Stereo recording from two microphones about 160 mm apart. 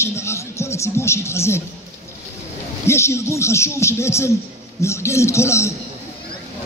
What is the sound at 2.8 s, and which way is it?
A man's voice, 15° left (ahead or behind).